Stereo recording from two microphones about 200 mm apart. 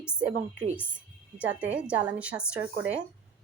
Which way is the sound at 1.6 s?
5° right (ahead or behind).